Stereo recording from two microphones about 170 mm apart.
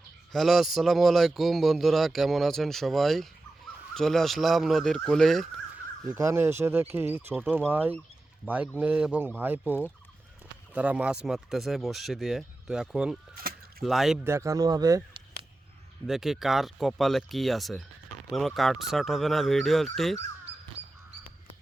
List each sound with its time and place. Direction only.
0.3 s a man's voice: centre (ahead or behind)
6.1 s a man's voice: 15° right (ahead or behind)
13.3 s a sound: 60° right (ahead or behind)
13.8 s a man's voice: centre (ahead or behind)
14.3 s speech: 15° right (ahead or behind)
16.0 s a man's voice: centre (ahead or behind)